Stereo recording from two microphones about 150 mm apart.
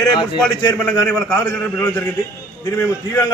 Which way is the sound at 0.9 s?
15° left (ahead or behind).